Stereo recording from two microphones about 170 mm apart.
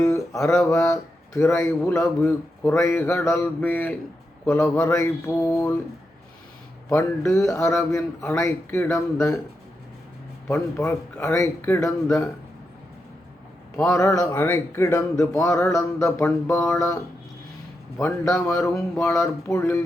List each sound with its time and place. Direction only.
0.4 s speech: 15° left (ahead or behind)
6.9 s speech: 15° left (ahead or behind)
10.5 s speech: 15° left (ahead or behind)
13.8 s speech: 15° left (ahead or behind)
18.0 s speech: 15° left (ahead or behind)